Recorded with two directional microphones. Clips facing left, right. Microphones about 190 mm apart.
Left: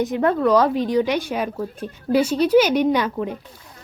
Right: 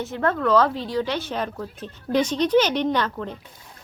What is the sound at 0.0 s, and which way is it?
A woman's voice, 15° left (ahead or behind).